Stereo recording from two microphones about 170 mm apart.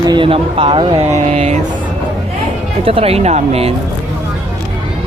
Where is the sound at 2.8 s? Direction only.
35° right (ahead or behind).